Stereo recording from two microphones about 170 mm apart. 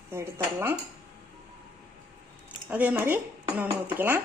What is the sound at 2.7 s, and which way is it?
Speech, 10° right (ahead or behind).